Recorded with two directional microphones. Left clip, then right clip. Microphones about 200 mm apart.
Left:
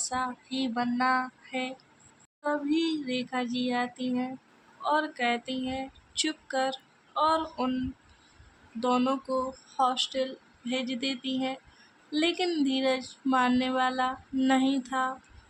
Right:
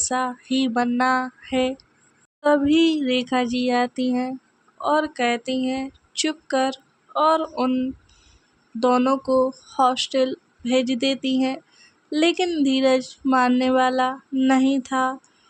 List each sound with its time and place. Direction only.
0.0 s speech: 35° right (ahead or behind)
4.8 s a sound: 35° right (ahead or behind)
8.8 s speech: 30° right (ahead or behind)